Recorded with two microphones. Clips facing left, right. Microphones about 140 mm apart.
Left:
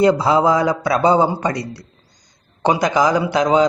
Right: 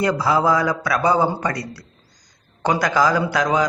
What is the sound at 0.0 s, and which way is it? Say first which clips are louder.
A man's voice: left 5 dB; 25° left (ahead or behind).